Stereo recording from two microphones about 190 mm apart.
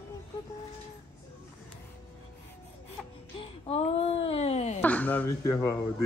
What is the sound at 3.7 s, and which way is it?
Speech, 30° left (ahead or behind).